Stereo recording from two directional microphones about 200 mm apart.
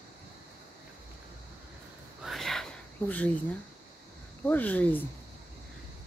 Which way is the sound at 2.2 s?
Centre (ahead or behind).